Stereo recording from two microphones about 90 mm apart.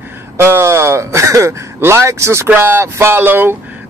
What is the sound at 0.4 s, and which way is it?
Speech, 30° right (ahead or behind).